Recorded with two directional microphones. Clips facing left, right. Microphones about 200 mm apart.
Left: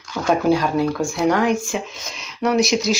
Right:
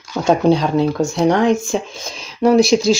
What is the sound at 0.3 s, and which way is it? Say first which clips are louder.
Speech: right 3 dB; 25° right (ahead or behind).